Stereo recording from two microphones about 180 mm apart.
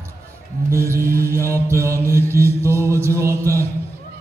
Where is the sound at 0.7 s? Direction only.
15° right (ahead or behind).